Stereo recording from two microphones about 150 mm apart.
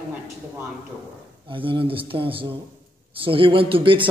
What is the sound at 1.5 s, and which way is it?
A man's voice, 35° right (ahead or behind).